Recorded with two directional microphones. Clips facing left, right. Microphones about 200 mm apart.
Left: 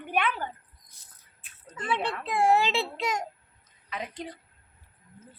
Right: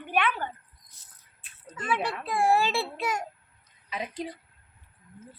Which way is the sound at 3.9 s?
10° right (ahead or behind).